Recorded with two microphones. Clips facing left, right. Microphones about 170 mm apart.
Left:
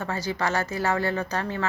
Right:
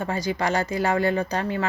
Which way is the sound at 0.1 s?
15° right (ahead or behind).